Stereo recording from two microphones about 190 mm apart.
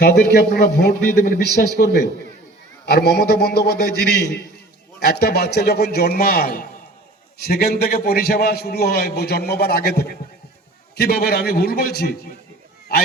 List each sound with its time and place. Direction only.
0.0 s a man's voice: 60° left (ahead or behind)